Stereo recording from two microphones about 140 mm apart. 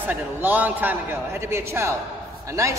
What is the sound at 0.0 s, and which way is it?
A man's voice, 15° right (ahead or behind).